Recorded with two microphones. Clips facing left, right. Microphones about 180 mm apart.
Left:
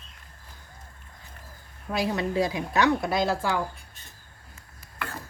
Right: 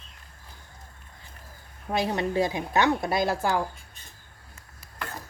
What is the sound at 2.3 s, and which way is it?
Speech, 20° right (ahead or behind).